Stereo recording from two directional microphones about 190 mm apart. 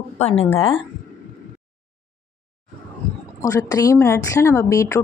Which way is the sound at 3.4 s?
15° left (ahead or behind).